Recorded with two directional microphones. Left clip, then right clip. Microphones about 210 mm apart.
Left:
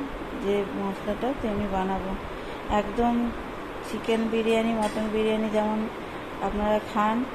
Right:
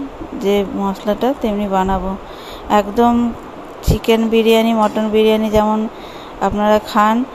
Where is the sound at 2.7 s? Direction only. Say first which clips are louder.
Right 12 dB; 40° right (ahead or behind).